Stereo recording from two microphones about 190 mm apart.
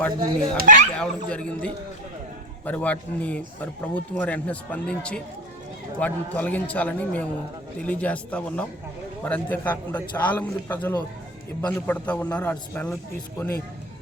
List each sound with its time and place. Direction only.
0.2 s speech: 45° right (ahead or behind)
0.9 s speech: 5° left (ahead or behind)
2.6 s speech: 5° left (ahead or behind)